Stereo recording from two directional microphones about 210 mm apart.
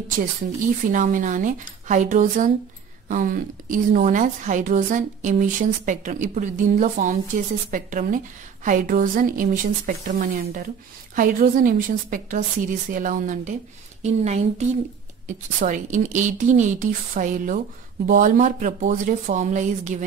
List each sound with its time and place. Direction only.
0.2 s a woman's voice: 40° right (ahead or behind)